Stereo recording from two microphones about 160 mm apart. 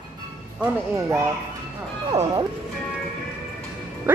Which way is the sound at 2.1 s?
35° right (ahead or behind).